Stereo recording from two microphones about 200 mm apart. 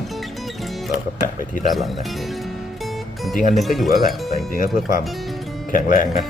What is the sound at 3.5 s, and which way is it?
Speech, centre (ahead or behind).